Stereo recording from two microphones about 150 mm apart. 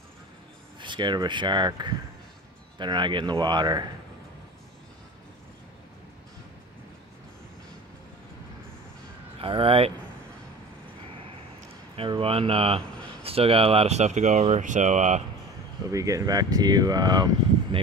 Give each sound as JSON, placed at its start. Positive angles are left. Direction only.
{"t": 0.7, "sound": "speech", "side_deg": -30}
{"t": 9.4, "sound": "speech", "side_deg": -35}
{"t": 12.0, "sound": "speech", "side_deg": -40}
{"t": 15.9, "sound": "speech", "side_deg": -20}